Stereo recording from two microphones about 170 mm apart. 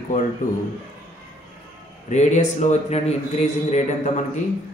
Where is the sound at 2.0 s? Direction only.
45° left (ahead or behind).